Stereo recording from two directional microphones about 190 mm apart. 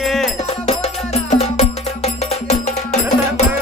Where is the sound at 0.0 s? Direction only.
Centre (ahead or behind).